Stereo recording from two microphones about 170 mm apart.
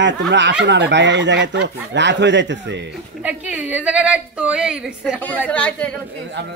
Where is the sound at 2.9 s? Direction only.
10° right (ahead or behind).